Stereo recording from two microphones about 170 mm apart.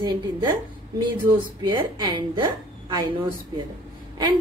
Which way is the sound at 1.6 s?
25° right (ahead or behind).